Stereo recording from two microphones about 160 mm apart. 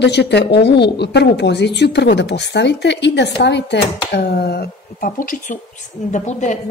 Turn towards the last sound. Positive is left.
turn(degrees=50)  # may be behind; listen again after turning